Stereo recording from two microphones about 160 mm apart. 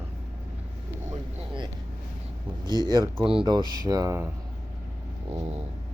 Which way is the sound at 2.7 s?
25° right (ahead or behind).